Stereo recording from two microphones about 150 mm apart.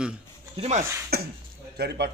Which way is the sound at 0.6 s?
40° right (ahead or behind).